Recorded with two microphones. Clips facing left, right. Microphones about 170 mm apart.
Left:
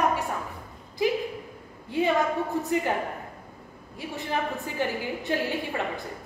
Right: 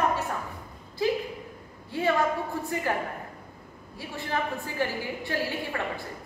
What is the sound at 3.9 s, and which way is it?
A woman's voice, 20° left (ahead or behind).